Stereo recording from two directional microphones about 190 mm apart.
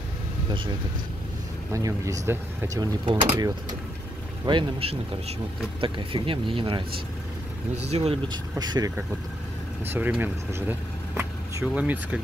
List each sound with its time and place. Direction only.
1.7 s speech: 15° right (ahead or behind)
7.9 s speech: 30° right (ahead or behind)
9.8 s speech: 10° right (ahead or behind)